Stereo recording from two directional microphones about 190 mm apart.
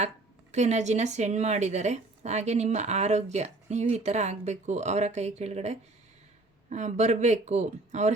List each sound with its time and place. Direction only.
0.5 s speech: 35° right (ahead or behind)